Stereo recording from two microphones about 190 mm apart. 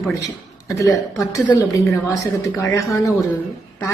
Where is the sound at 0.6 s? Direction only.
15° left (ahead or behind).